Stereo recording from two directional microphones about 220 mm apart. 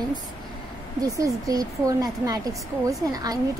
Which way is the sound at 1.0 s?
15° right (ahead or behind).